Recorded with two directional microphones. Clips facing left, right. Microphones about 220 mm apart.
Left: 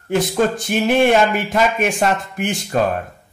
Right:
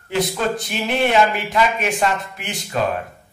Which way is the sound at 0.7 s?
50° left (ahead or behind).